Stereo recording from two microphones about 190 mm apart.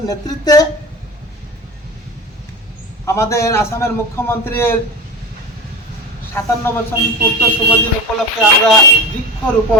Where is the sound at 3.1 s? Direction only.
15° left (ahead or behind).